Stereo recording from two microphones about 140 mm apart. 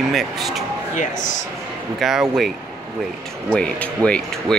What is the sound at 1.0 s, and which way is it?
Speech, 65° left (ahead or behind).